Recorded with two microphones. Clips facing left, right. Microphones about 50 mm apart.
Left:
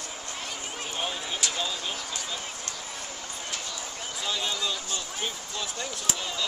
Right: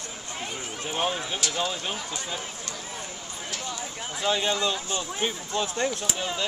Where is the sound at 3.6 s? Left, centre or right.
Right.